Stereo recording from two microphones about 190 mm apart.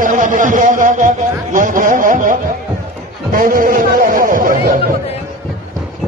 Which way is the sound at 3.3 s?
45° right (ahead or behind).